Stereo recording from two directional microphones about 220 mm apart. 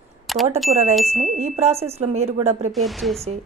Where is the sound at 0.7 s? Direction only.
25° right (ahead or behind).